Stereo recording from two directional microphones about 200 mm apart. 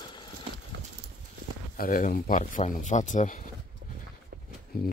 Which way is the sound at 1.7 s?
45° left (ahead or behind).